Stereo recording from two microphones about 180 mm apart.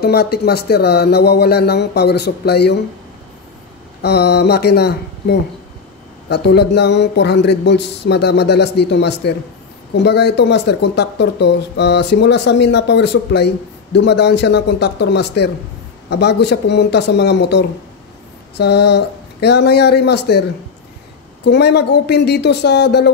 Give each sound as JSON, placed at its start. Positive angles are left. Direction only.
{"t": 0.0, "sound": "speech", "side_deg": 60}
{"t": 4.0, "sound": "speech", "side_deg": 65}
{"t": 21.5, "sound": "speech", "side_deg": 65}